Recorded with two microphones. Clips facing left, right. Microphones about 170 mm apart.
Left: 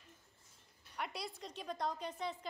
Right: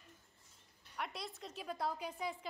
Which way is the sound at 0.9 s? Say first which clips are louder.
Left 1 dB; centre (ahead or behind).